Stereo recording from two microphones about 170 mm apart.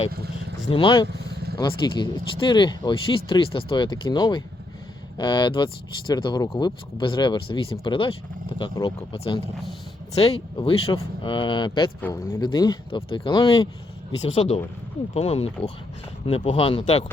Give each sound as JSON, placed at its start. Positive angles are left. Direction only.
{"t": 0.7, "sound": "speech", "side_deg": 30}
{"t": 11.9, "sound": "speech", "side_deg": 10}
{"t": 12.4, "sound": "speech", "side_deg": 25}